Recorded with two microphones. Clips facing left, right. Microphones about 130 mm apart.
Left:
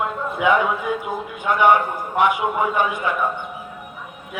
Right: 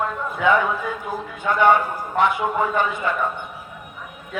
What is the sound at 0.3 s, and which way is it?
A man's voice, 15° left (ahead or behind).